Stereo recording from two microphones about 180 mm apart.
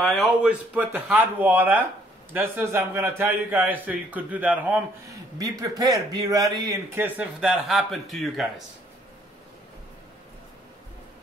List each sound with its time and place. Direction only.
0.0 s a man's voice: centre (ahead or behind)
5.4 s a man's voice: 20° right (ahead or behind)
7.2 s speech: 5° right (ahead or behind)